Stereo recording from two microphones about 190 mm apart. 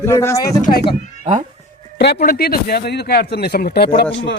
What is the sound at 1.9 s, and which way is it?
Speech, 60° left (ahead or behind).